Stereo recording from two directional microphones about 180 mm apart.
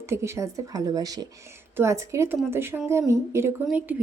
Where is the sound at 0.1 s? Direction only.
15° right (ahead or behind).